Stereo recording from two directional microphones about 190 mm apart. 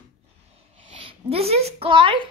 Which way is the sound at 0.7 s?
30° right (ahead or behind).